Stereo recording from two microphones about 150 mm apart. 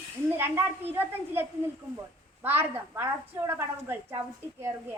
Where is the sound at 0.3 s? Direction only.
15° right (ahead or behind).